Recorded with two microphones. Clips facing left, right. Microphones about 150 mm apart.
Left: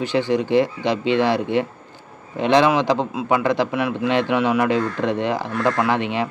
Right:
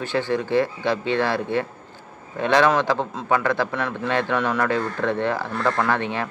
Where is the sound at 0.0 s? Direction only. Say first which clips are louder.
Left 4 dB; 15° left (ahead or behind).